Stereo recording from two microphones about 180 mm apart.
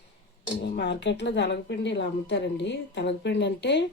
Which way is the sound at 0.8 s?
75° left (ahead or behind).